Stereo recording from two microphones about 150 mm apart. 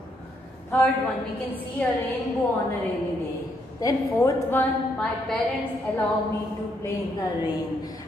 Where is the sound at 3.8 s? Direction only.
15° left (ahead or behind).